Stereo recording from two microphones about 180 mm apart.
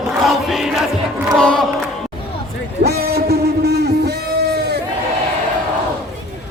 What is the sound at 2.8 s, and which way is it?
Music, 60° right (ahead or behind).